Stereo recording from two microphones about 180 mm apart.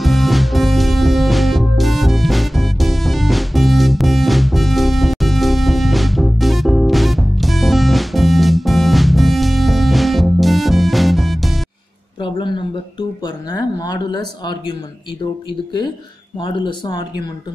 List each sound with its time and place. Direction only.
0.0 s music: centre (ahead or behind)
12.2 s a sound: 25° left (ahead or behind)
16.3 s speech: 25° left (ahead or behind)